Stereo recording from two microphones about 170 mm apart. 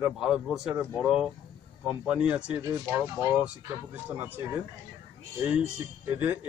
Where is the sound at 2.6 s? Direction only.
15° right (ahead or behind).